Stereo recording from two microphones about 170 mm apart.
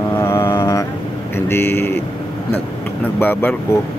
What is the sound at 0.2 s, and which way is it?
Mantra, 15° left (ahead or behind).